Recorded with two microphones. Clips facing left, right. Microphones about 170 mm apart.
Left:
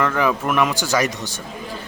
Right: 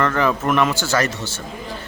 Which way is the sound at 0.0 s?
10° left (ahead or behind).